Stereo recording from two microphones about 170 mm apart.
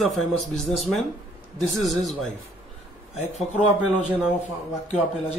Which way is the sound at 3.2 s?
40° left (ahead or behind).